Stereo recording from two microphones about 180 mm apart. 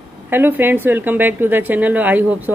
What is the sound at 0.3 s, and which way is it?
A woman's voice, 10° right (ahead or behind).